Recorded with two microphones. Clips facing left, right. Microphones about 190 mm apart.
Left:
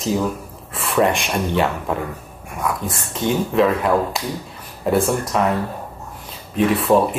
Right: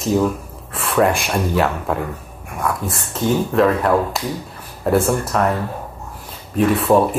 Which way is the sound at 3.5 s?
Centre (ahead or behind).